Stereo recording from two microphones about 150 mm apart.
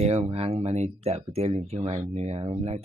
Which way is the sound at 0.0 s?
45° right (ahead or behind).